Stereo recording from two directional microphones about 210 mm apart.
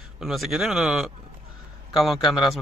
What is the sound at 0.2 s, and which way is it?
Speech, centre (ahead or behind).